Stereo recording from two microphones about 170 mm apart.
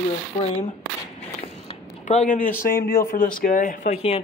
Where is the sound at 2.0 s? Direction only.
50° left (ahead or behind).